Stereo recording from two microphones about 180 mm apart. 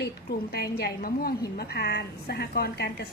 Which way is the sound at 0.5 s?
60° left (ahead or behind).